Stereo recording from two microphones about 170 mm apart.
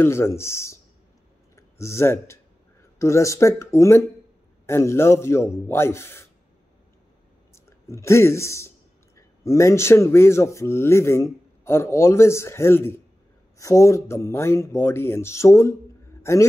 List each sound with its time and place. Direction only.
0.0 s speech: 15° left (ahead or behind)
7.5 s a man's voice: 15° left (ahead or behind)